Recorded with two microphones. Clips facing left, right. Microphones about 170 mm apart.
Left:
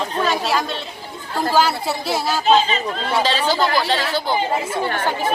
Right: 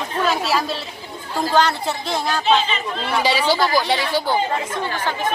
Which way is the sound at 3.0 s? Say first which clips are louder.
Right 1 dB; 10° right (ahead or behind).